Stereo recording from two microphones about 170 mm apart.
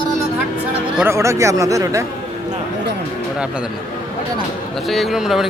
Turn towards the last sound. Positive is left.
turn(degrees=0)  # may be behind; listen again after turning